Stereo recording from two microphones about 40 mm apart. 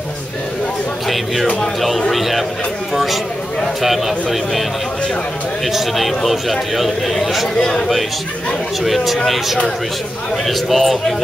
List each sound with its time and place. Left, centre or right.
1.0 s a man's voice: centre
5.7 s a man's voice: centre
7.5 s a man's voice: left
8.8 s a man's voice: centre